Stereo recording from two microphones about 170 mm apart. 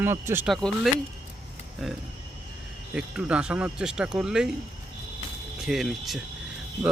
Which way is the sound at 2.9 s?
5° right (ahead or behind).